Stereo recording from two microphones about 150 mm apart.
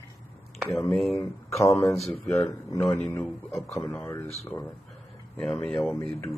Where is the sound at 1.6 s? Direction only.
20° left (ahead or behind).